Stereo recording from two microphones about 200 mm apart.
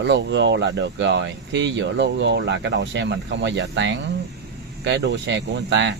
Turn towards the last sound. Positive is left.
turn(degrees=-65)  # may be behind; listen again after turning